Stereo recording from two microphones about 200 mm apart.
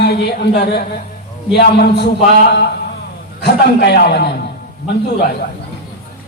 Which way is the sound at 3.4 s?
55° left (ahead or behind).